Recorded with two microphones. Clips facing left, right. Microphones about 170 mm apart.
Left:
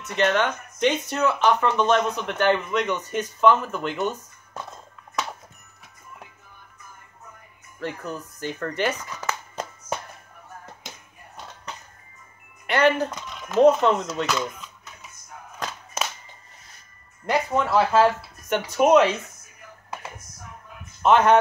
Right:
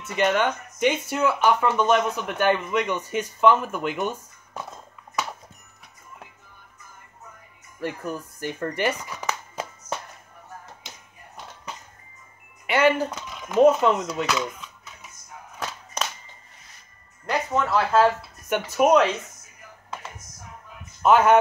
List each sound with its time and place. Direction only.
0.0 s speech: 10° right (ahead or behind)
7.8 s speech: 10° right (ahead or behind)
12.6 s speech: 10° right (ahead or behind)
15.6 s music: 5° left (ahead or behind)
17.3 s speech: 10° left (ahead or behind)
18.5 s speech: 5° right (ahead or behind)
21.0 s a man's voice: 5° right (ahead or behind)